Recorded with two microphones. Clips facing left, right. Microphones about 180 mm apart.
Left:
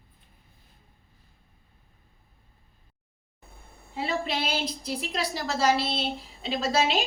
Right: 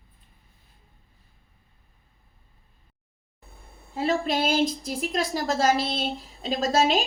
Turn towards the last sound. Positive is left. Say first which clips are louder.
# right 3 dB
turn(degrees=-45)  # may be behind; listen again after turning